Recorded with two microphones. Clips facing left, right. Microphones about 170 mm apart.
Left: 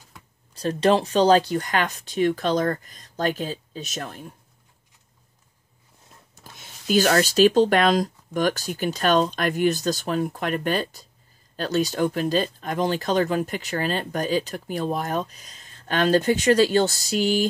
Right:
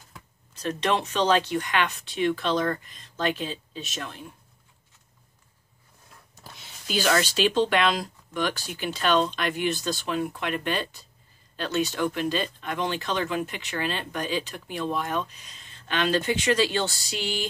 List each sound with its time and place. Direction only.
0.6 s speech: 35° left (ahead or behind)
6.4 s speech: 50° left (ahead or behind)